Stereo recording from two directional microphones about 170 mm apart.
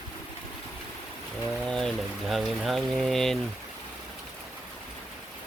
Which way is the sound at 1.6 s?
5° left (ahead or behind).